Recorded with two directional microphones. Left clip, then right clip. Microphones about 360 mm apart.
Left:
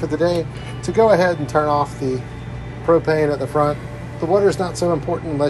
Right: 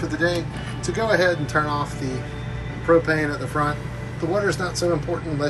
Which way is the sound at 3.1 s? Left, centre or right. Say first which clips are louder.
Left 5 dB; centre.